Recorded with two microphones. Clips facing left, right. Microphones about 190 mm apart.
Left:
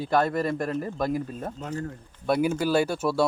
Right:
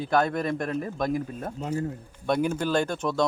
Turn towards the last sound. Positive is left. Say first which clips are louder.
# left 2 dB
turn(degrees=10)  # may be behind; listen again after turning